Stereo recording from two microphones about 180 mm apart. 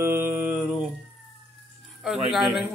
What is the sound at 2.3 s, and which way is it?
Speech, centre (ahead or behind).